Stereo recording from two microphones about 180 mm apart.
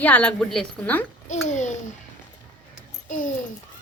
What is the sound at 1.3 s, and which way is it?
Speech, 40° left (ahead or behind).